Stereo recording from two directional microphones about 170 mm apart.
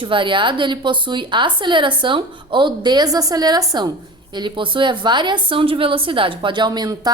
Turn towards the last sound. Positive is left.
turn(degrees=-25)  # may be behind; listen again after turning